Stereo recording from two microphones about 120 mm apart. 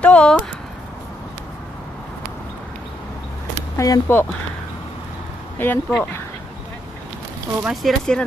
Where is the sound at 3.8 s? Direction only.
25° left (ahead or behind).